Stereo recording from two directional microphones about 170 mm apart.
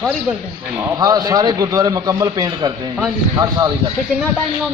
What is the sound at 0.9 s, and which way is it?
A man's voice, 25° right (ahead or behind).